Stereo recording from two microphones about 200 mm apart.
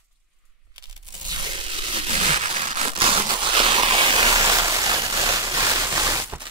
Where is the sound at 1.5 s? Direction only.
25° right (ahead or behind).